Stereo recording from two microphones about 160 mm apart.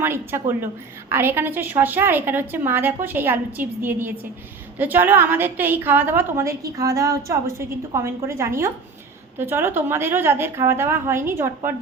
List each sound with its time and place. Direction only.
0.0 s a woman's voice: 15° right (ahead or behind)